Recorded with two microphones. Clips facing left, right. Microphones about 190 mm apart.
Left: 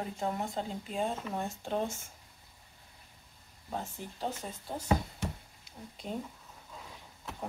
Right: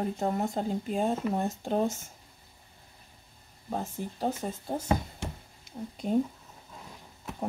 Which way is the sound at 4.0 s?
45° right (ahead or behind).